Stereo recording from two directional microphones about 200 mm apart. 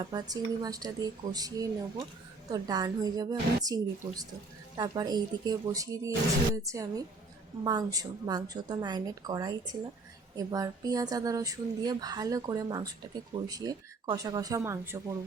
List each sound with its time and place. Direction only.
0.0 s speech: 20° right (ahead or behind)